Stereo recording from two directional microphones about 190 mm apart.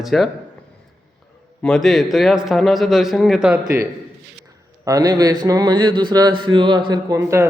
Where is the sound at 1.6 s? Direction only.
Centre (ahead or behind).